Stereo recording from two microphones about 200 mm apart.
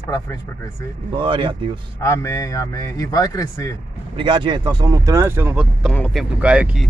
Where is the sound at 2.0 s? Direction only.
15° left (ahead or behind).